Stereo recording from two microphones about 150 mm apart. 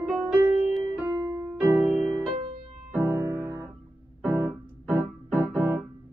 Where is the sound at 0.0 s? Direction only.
5° right (ahead or behind).